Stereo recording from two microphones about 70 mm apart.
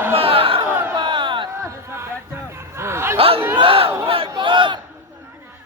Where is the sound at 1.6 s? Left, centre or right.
Right.